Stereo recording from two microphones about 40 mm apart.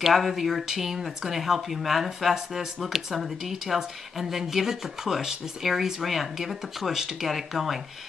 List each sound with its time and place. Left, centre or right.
0.0 s speech: centre